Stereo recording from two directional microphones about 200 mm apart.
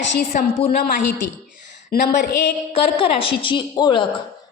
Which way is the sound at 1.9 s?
50° left (ahead or behind).